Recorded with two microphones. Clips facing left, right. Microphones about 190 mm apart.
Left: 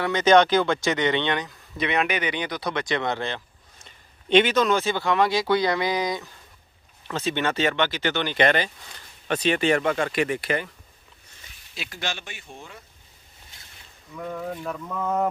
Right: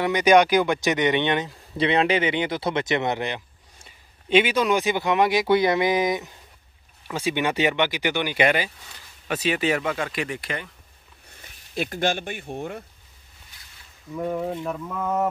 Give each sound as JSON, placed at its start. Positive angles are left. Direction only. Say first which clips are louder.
{"t": 0.0, "sound": "speech", "louder": "right 1 dB", "side_deg": -15}
{"t": 11.7, "sound": "speech", "louder": "right 9 dB", "side_deg": -50}
{"t": 14.1, "sound": "speech", "louder": "right 5 dB", "side_deg": -25}
{"t": 14.7, "sound": "speech", "louder": "right 1 dB", "side_deg": -5}